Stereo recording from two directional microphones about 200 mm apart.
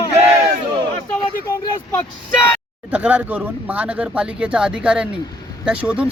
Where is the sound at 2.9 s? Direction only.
5° right (ahead or behind).